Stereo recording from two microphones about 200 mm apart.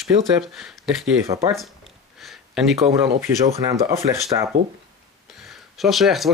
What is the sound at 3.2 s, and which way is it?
Speech, 15° right (ahead or behind).